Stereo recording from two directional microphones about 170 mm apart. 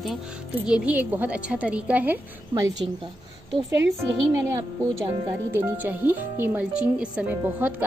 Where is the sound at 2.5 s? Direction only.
20° right (ahead or behind).